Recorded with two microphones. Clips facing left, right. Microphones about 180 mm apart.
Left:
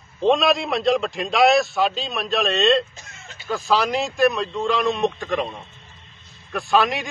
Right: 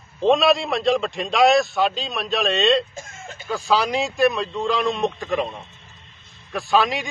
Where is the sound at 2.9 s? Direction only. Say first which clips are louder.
Right 7 dB; 50° right (ahead or behind).